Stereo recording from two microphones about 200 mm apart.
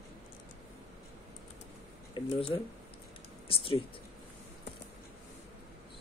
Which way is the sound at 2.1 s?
25° left (ahead or behind).